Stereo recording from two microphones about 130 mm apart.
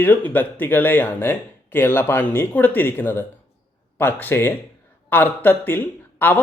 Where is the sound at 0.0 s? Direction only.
15° left (ahead or behind).